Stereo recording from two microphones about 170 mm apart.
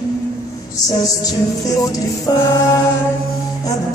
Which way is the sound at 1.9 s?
20° left (ahead or behind).